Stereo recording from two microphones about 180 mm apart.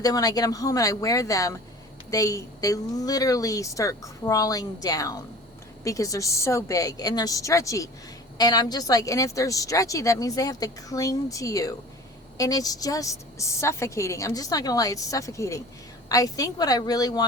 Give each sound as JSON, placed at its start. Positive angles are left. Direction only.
{"t": 0.0, "sound": "a woman's voice", "side_deg": 20}